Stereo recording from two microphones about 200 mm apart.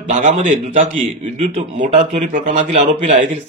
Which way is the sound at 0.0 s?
35° right (ahead or behind).